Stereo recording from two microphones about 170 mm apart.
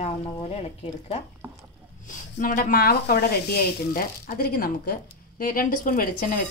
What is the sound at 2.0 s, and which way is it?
Speech, 50° left (ahead or behind).